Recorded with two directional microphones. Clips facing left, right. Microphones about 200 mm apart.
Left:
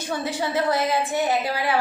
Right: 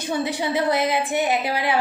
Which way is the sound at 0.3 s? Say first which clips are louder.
Left 1 dB; 15° right (ahead or behind).